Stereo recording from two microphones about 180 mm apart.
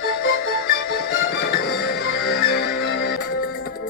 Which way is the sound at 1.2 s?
60° left (ahead or behind).